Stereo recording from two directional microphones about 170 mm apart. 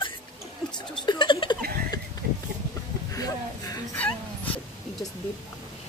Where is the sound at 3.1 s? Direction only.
20° left (ahead or behind).